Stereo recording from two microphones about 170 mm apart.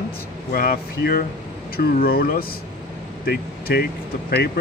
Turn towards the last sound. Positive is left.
turn(degrees=70)  # may be behind; listen again after turning